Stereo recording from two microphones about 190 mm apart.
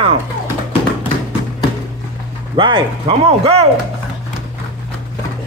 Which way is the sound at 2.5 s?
25° right (ahead or behind).